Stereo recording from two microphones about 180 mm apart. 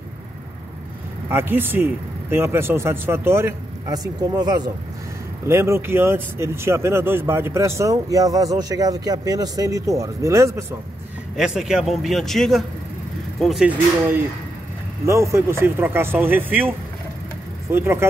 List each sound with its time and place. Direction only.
1.3 s speech: 10° right (ahead or behind)
11.3 s speech: 5° right (ahead or behind)
15.0 s speech: 15° right (ahead or behind)